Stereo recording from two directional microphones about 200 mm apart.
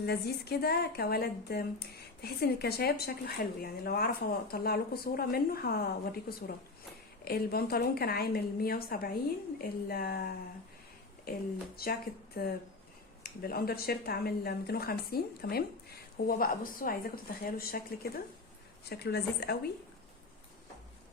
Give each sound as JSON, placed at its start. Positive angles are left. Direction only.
{"t": 0.0, "sound": "a woman's voice", "side_deg": 55}